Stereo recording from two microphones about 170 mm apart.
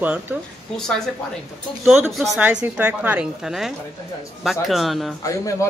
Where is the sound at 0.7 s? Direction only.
5° left (ahead or behind).